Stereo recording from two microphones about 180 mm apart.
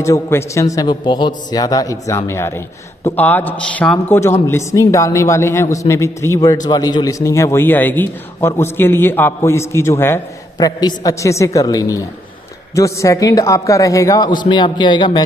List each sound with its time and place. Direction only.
0.0 s a man's voice: 15° left (ahead or behind)